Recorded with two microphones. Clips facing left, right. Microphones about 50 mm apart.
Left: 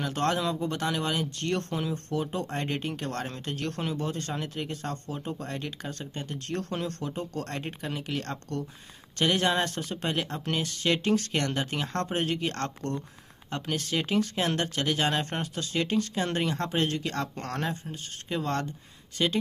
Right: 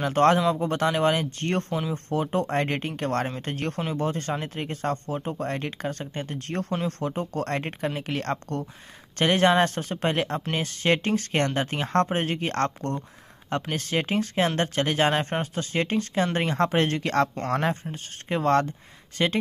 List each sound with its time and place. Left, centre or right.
0.0 s speech: right
1.7 s speech: centre
2.0 s speech: right
5.4 s speech: right
17.4 s speech: right
17.9 s speech: right